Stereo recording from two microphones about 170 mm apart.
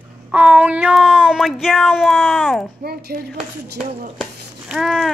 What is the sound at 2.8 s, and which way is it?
Speech, 70° right (ahead or behind).